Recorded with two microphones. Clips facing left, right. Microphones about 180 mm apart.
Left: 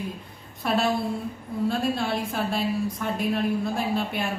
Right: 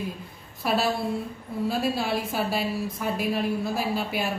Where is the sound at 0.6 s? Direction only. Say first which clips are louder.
Left 1 dB; 5° right (ahead or behind).